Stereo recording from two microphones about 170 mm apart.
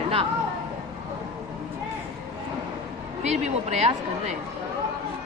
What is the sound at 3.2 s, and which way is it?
Speech, 40° right (ahead or behind).